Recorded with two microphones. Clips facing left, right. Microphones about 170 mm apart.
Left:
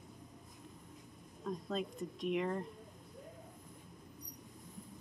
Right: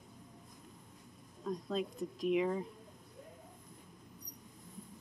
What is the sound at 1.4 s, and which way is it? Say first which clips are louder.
Speech: right 2 dB; centre (ahead or behind).